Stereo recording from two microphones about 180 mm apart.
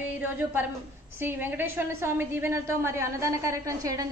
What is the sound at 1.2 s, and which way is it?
A woman's voice, 10° right (ahead or behind).